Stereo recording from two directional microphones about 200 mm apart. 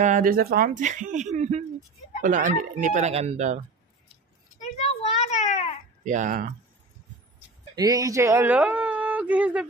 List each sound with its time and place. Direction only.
0.0 s speech: 40° right (ahead or behind)
4.6 s a sound: 30° left (ahead or behind)
6.0 s speech: 40° right (ahead or behind)
7.7 s speech: 20° right (ahead or behind)